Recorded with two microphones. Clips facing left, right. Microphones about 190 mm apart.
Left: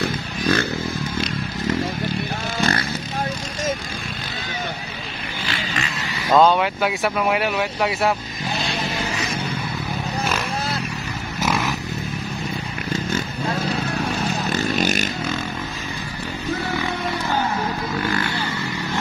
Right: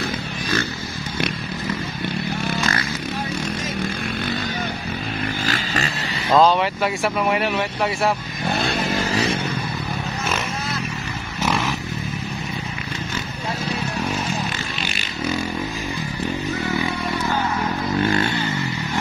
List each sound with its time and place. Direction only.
0.0 s a sound: 55° left (ahead or behind)
6.3 s speech: centre (ahead or behind)
9.1 s a sound: 30° right (ahead or behind)
11.4 s vehicle: centre (ahead or behind)
14.8 s vehicle: 45° left (ahead or behind)
18.0 s vehicle: 25° right (ahead or behind)